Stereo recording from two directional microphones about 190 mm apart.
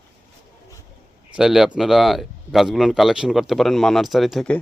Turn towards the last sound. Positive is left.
turn(degrees=5)  # may be behind; listen again after turning